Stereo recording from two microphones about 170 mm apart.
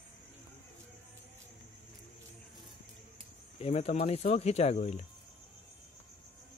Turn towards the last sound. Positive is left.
turn(degrees=40)  # may be behind; listen again after turning